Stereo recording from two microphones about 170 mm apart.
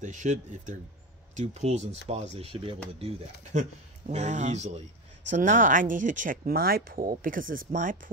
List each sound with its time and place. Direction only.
0.0 s speech: 45° right (ahead or behind)
4.1 s speech: 45° right (ahead or behind)